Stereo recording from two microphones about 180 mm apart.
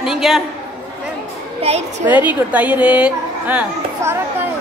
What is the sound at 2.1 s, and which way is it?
A woman's voice, 10° right (ahead or behind).